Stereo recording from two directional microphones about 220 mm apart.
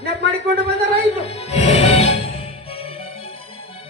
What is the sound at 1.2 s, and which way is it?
Music, 30° left (ahead or behind).